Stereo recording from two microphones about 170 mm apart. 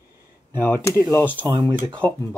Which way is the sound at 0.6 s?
15° left (ahead or behind).